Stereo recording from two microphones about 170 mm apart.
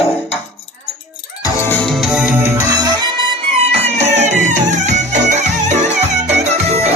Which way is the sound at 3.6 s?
40° right (ahead or behind).